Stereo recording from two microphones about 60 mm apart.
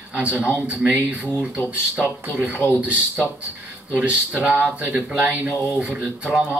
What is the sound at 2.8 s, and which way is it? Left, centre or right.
Speech, right.